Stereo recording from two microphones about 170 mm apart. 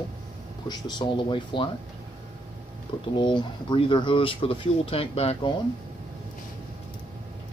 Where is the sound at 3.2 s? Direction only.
25° left (ahead or behind).